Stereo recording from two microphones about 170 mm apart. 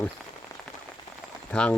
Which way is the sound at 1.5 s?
5° left (ahead or behind).